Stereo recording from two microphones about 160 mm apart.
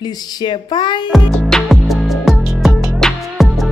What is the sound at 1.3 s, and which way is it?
Music, centre (ahead or behind).